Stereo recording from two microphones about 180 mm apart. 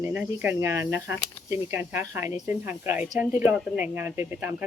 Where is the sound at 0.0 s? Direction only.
10° right (ahead or behind).